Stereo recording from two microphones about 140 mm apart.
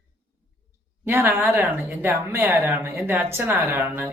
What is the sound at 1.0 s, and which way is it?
Speech, 15° right (ahead or behind).